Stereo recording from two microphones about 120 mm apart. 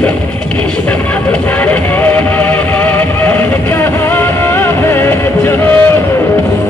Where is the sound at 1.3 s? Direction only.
15° left (ahead or behind).